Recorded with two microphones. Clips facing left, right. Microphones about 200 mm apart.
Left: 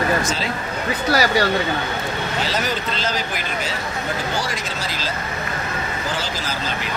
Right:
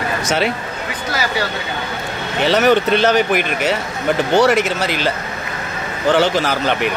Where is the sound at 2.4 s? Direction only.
65° right (ahead or behind).